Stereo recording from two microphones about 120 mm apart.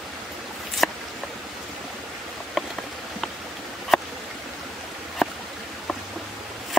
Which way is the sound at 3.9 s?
Centre (ahead or behind).